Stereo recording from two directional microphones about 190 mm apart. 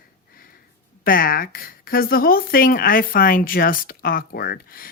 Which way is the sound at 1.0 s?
50° left (ahead or behind).